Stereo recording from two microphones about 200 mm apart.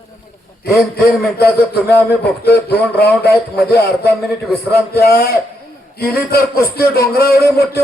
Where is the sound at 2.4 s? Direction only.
55° left (ahead or behind).